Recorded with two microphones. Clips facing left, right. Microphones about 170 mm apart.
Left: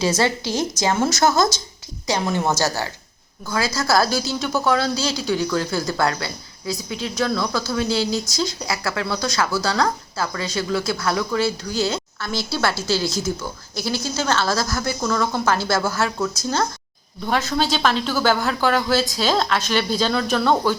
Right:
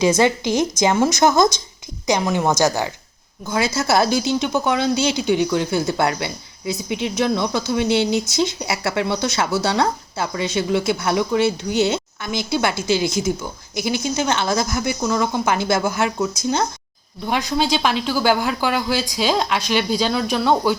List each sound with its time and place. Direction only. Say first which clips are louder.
0.0 s speech: right 4 dB; 15° right (ahead or behind)